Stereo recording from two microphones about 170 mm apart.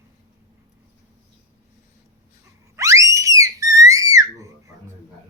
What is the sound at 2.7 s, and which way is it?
Whistle, 20° right (ahead or behind).